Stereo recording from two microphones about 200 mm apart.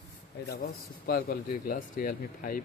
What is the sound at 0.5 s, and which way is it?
Speech, 50° left (ahead or behind).